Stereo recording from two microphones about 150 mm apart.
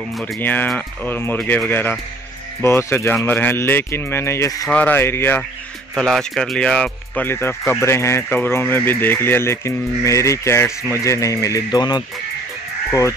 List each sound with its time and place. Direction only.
0.2 s speech: 10° left (ahead or behind)
4.6 s speech: 10° left (ahead or behind)
5.9 s speech: 5° left (ahead or behind); by 12.0 s 25° left (ahead or behind)